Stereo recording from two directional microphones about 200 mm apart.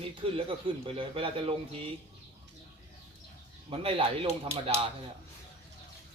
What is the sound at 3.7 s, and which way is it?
Speech, 25° right (ahead or behind).